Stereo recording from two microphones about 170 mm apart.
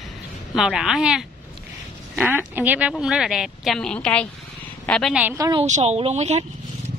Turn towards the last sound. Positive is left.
turn(degrees=-40)  # may be behind; listen again after turning